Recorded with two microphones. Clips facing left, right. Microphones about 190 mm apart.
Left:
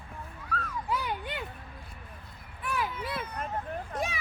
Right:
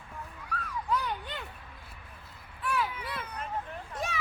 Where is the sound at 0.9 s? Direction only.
10° left (ahead or behind).